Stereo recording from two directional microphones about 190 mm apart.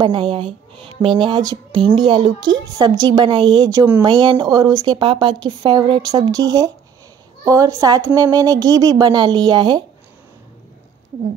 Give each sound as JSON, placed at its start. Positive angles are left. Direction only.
{"t": 0.0, "sound": "speech", "side_deg": -25}